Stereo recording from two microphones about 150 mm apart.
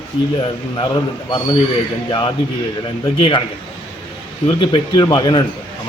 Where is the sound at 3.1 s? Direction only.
35° left (ahead or behind).